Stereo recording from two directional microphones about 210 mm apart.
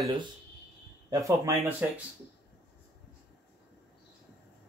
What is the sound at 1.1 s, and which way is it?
Speech, 15° right (ahead or behind).